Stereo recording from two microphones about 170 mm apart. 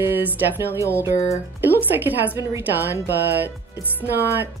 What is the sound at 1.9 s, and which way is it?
Speech, 10° right (ahead or behind).